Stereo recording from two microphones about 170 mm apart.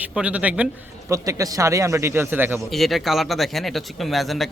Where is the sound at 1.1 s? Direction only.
20° right (ahead or behind).